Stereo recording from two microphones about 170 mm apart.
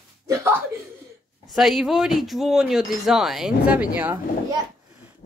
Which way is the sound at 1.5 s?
Centre (ahead or behind).